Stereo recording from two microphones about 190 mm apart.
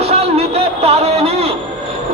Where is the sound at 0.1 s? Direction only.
35° right (ahead or behind).